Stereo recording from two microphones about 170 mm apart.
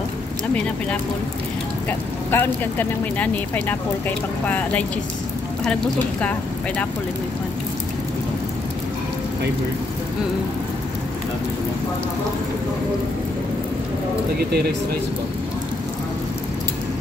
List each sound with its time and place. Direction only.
1.9 s speech: 10° left (ahead or behind)
14.5 s speech: 65° right (ahead or behind)